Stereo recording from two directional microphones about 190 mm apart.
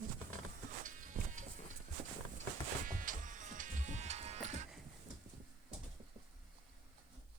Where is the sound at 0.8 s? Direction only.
45° right (ahead or behind).